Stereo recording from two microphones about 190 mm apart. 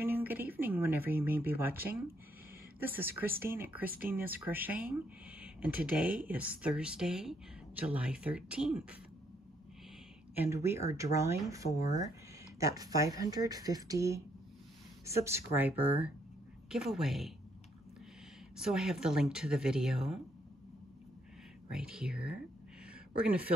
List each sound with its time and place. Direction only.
0.0 s speech: 10° right (ahead or behind)
10.3 s speech: 10° right (ahead or behind)
18.6 s speech: 5° right (ahead or behind)
21.6 s speech: 5° right (ahead or behind)